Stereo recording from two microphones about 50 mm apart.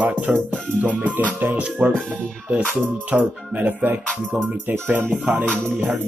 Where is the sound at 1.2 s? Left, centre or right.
Right.